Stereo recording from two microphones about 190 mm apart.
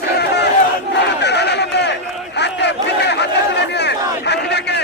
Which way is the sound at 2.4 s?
65° left (ahead or behind).